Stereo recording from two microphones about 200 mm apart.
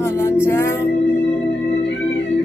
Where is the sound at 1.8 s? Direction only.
60° left (ahead or behind).